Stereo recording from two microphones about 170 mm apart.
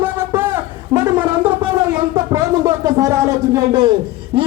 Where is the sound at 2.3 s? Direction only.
20° right (ahead or behind).